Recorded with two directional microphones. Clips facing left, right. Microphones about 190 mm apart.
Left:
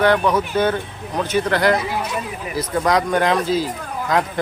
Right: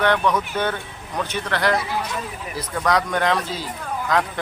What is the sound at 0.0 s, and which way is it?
Speech, 35° left (ahead or behind).